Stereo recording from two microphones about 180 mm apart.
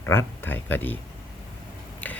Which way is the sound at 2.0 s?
10° left (ahead or behind).